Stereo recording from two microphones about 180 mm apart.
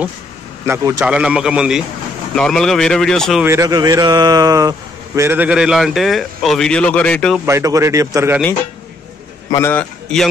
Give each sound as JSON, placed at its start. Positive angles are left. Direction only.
{"t": 0.7, "sound": "a man's voice", "side_deg": -15}
{"t": 3.4, "sound": "a man's voice", "side_deg": -20}
{"t": 7.4, "sound": "a man's voice", "side_deg": -15}
{"t": 9.5, "sound": "a man's voice", "side_deg": 15}